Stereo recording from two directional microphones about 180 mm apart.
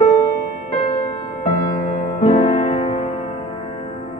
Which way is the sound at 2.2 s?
35° left (ahead or behind).